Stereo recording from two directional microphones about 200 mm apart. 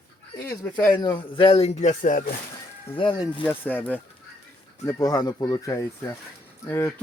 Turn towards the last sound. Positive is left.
turn(degrees=10)  # may be behind; listen again after turning